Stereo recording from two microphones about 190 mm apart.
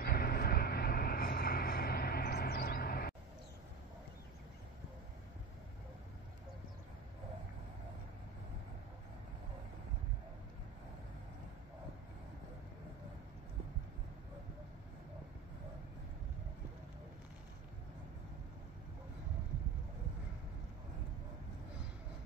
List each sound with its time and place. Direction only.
0.0 s vehicle: 55° left (ahead or behind)